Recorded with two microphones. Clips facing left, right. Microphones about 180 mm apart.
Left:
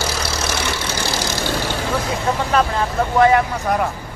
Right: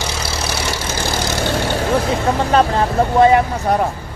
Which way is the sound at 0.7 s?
50° right (ahead or behind).